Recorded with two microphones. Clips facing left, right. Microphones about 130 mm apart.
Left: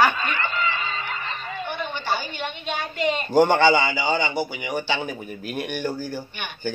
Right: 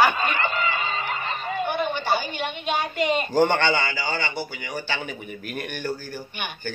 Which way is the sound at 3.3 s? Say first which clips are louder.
Left 5 dB; 15° left (ahead or behind).